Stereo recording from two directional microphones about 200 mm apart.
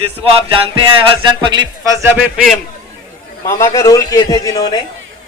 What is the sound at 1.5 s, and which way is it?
Speech, 20° right (ahead or behind).